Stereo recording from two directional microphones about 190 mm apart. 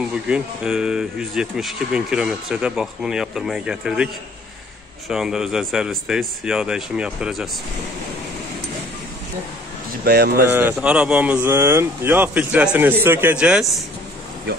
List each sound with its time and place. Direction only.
0.3 s speech: 5° right (ahead or behind)
10.0 s speech: 60° right (ahead or behind)
10.5 s speech: 10° right (ahead or behind)